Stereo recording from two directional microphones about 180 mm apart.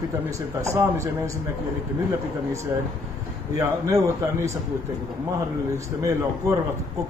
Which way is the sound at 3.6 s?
15° right (ahead or behind).